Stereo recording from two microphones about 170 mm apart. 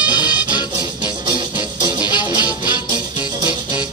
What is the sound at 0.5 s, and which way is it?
Music, 25° left (ahead or behind).